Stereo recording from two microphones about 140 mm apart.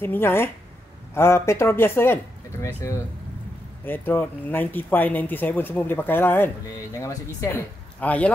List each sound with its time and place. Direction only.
0.0 s a woman's voice: 15° left (ahead or behind)